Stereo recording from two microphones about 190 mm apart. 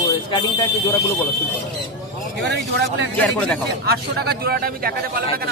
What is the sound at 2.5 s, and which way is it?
Speech, 65° right (ahead or behind).